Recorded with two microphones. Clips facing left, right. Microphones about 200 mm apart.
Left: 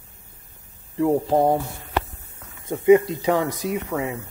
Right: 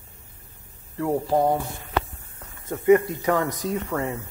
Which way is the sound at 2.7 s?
20° left (ahead or behind).